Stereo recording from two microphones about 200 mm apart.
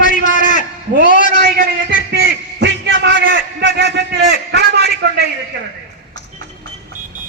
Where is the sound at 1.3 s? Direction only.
55° right (ahead or behind).